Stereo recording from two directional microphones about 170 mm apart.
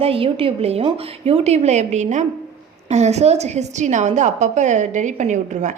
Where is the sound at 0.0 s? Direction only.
35° right (ahead or behind).